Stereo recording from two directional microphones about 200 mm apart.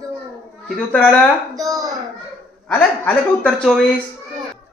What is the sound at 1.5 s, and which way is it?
Speech, 15° right (ahead or behind).